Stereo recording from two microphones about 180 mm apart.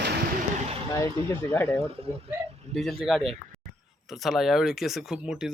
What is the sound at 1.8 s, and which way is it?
Speech, 30° right (ahead or behind).